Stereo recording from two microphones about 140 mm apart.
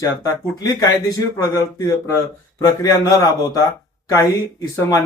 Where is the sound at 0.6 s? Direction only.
25° left (ahead or behind).